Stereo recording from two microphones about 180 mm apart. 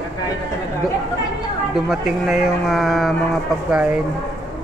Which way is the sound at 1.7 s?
5° right (ahead or behind).